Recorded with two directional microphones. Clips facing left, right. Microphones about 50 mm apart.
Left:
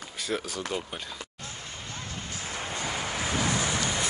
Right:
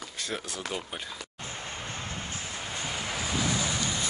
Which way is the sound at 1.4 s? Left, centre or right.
Right.